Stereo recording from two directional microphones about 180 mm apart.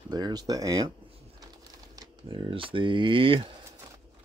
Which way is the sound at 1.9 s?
25° right (ahead or behind).